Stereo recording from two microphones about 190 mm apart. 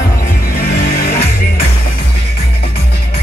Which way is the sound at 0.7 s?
55° left (ahead or behind).